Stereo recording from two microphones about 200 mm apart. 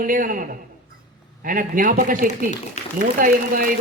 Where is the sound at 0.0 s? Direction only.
45° right (ahead or behind).